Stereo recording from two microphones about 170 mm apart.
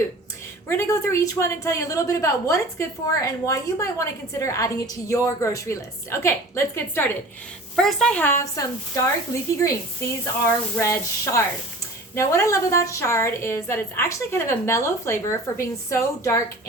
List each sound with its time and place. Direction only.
0.7 s a woman's voice: 15° left (ahead or behind)
7.8 s a woman's voice: centre (ahead or behind)